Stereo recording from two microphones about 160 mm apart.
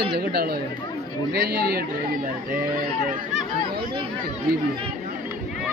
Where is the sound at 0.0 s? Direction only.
90° right.